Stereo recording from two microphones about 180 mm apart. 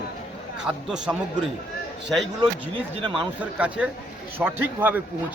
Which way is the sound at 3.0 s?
25° right (ahead or behind).